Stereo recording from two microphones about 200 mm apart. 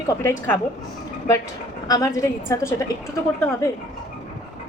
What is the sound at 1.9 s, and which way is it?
Speech, 15° left (ahead or behind).